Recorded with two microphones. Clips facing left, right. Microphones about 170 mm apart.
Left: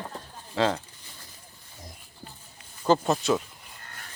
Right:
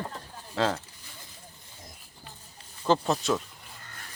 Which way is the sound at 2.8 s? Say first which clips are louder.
Left 2 dB; centre (ahead or behind).